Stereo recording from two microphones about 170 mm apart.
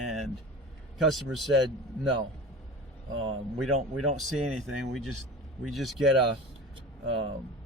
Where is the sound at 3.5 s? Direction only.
Centre (ahead or behind).